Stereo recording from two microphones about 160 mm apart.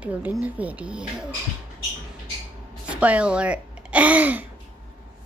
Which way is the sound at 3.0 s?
10° right (ahead or behind).